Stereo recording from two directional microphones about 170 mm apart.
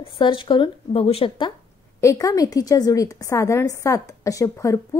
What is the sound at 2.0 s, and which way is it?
A woman's voice, 20° left (ahead or behind).